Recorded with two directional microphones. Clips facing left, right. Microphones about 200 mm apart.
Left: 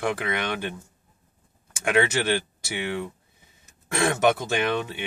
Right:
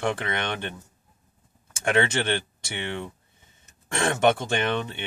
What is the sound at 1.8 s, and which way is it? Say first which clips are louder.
Speech: left 1 dB; 5° left (ahead or behind).